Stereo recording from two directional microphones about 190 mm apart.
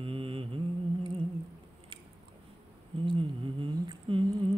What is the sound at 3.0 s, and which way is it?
Humming, 25° right (ahead or behind).